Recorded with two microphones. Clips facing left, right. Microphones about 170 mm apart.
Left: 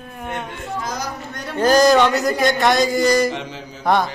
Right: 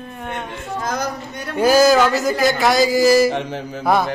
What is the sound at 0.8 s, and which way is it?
Speech, 55° right (ahead or behind).